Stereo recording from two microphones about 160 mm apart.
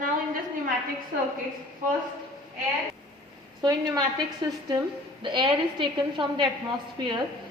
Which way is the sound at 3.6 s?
25° right (ahead or behind).